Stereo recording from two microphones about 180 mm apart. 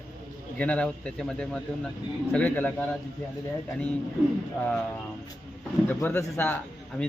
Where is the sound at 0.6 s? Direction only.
5° left (ahead or behind).